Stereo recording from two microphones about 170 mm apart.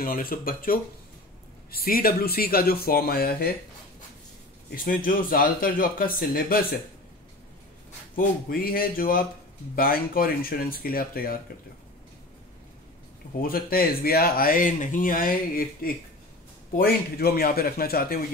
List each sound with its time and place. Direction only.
0.0 s speech: 55° left (ahead or behind)
4.7 s speech: 55° left (ahead or behind)
8.2 s speech: 60° left (ahead or behind)
13.4 s speech: 60° left (ahead or behind)